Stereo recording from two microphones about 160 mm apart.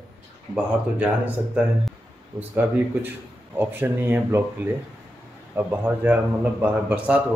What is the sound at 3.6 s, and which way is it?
A man's voice, 10° right (ahead or behind).